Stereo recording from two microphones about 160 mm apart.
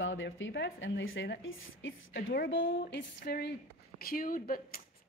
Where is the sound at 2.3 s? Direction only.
75° left (ahead or behind).